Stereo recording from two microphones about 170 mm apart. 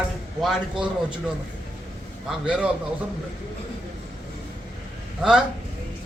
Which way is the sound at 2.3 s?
5° right (ahead or behind).